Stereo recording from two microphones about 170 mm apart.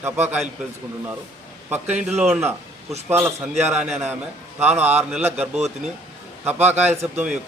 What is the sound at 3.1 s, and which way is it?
A man's voice, 10° right (ahead or behind).